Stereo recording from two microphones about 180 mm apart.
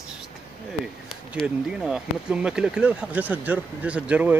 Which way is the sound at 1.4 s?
5° right (ahead or behind).